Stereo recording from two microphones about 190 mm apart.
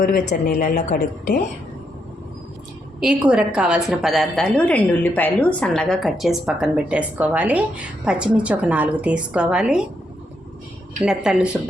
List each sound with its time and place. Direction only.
0.0 s a woman's voice: 45° left (ahead or behind)
3.0 s a woman's voice: 5° right (ahead or behind)
11.0 s a woman's voice: centre (ahead or behind)